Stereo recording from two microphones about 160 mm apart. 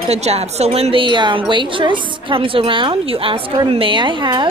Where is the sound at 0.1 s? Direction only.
40° right (ahead or behind).